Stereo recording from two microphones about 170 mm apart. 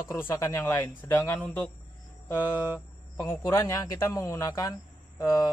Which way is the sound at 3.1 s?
15° left (ahead or behind).